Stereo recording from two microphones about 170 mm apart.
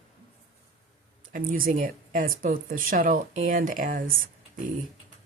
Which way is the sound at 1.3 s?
55° right (ahead or behind).